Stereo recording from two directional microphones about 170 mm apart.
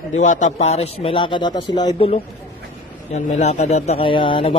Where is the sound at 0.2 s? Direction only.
45° left (ahead or behind); by 2.0 s 25° left (ahead or behind).